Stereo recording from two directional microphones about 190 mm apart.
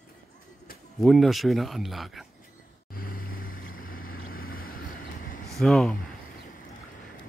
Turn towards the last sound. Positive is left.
turn(degrees=5)  # may be behind; listen again after turning